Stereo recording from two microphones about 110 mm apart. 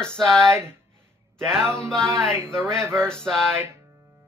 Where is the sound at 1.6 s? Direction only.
20° right (ahead or behind).